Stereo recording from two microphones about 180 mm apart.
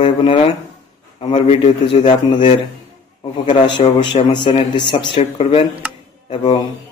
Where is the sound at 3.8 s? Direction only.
30° left (ahead or behind).